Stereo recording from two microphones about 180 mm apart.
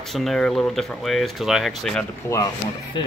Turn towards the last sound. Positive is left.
turn(degrees=25)  # may be behind; listen again after turning